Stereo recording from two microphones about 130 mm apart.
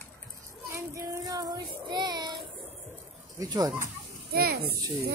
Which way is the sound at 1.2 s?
30° right (ahead or behind).